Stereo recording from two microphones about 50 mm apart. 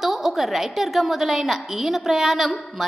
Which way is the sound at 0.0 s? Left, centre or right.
Centre.